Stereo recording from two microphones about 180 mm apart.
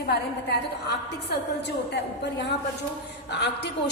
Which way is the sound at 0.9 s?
65° left (ahead or behind).